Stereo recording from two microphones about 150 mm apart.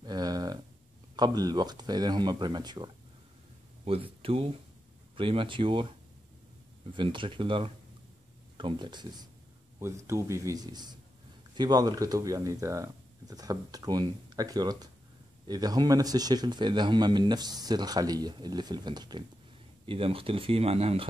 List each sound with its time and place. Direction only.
0.0 s a sound: 25° right (ahead or behind)
1.1 s speech: 25° right (ahead or behind)
3.8 s speech: 40° right (ahead or behind)
9.8 s speech: 20° right (ahead or behind); by 21.1 s 40° right (ahead or behind)